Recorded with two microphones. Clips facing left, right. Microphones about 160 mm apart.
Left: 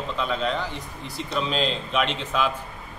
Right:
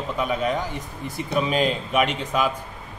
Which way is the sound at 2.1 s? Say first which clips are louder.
Right 2 dB; 10° right (ahead or behind).